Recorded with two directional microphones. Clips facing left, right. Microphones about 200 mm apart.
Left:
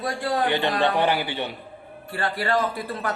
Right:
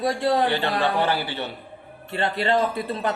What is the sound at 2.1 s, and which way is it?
Chime, 25° right (ahead or behind).